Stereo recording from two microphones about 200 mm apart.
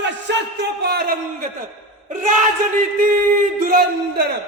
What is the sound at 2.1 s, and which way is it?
Speech, 40° right (ahead or behind).